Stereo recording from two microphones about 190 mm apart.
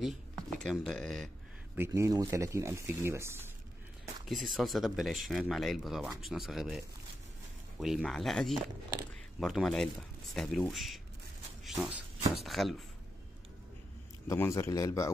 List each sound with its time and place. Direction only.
0.0 s speech: centre (ahead or behind)
1.8 s speech: 15° right (ahead or behind)
4.3 s speech: centre (ahead or behind)
7.8 s speech: centre (ahead or behind)
14.2 s a man's voice: 15° left (ahead or behind)